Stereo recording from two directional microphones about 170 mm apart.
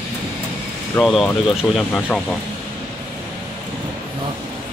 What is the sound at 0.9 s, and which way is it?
Speech, 5° left (ahead or behind).